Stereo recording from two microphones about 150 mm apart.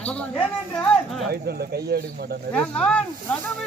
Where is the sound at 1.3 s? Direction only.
90° right.